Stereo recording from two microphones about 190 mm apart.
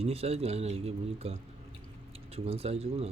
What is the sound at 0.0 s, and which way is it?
Speech, 30° right (ahead or behind).